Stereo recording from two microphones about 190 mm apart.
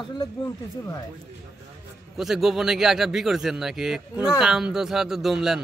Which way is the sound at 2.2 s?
Centre (ahead or behind).